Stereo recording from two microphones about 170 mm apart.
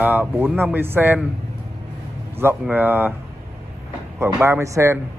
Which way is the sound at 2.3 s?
10° right (ahead or behind).